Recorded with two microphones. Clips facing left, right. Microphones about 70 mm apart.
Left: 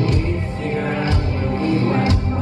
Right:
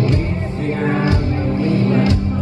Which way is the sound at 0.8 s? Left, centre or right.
Right.